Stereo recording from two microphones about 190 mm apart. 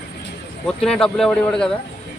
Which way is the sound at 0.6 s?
5° left (ahead or behind).